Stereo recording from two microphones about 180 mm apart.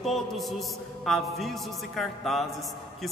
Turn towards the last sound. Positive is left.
turn(degrees=0)  # may be behind; listen again after turning